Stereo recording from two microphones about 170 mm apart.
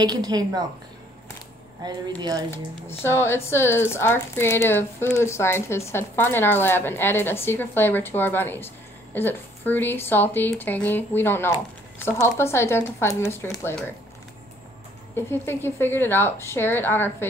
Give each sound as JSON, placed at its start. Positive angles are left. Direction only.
{"t": 0.0, "sound": "speech", "side_deg": -25}
{"t": 1.8, "sound": "speech", "side_deg": -25}
{"t": 2.5, "sound": "speech", "side_deg": 15}
{"t": 15.1, "sound": "speech", "side_deg": 15}